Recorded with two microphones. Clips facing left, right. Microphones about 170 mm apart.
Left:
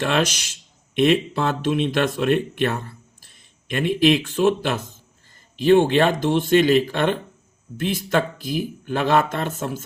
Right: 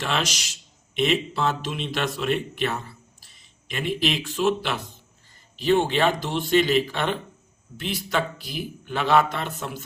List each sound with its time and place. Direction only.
0.0 s speech: 55° left (ahead or behind)